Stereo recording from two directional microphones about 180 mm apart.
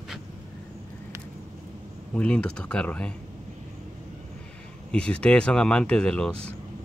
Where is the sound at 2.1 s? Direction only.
5° left (ahead or behind).